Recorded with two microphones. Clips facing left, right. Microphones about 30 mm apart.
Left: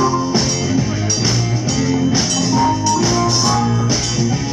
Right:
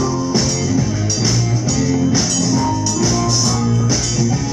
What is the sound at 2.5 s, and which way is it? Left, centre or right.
Music, left.